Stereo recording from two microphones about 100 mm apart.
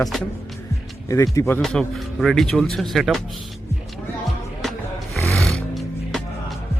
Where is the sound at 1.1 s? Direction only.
30° left (ahead or behind).